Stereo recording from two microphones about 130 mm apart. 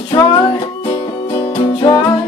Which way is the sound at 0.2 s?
35° left (ahead or behind).